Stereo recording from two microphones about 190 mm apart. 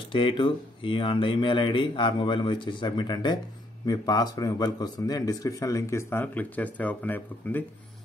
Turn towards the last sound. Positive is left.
turn(degrees=10)  # may be behind; listen again after turning